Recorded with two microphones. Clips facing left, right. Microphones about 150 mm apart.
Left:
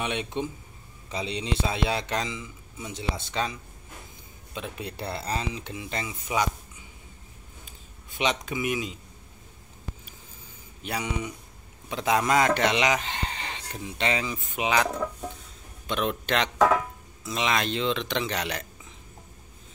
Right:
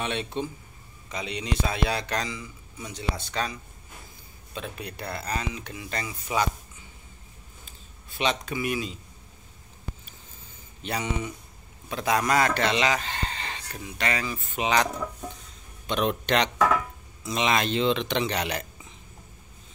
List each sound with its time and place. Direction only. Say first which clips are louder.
0.0 s a man's voice: even; 15° left (ahead or behind)
1.0 s speech: left 1 dB; 30° left (ahead or behind)
4.6 s speech: left 1 dB; 20° left (ahead or behind)
7.6 s speech: left 1 dB; 15° left (ahead or behind)
10.8 s speech: right 1 dB; 10° left (ahead or behind)
14.6 s speech: even; 10° left (ahead or behind)